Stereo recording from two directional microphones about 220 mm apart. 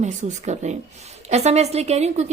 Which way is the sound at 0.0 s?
30° right (ahead or behind).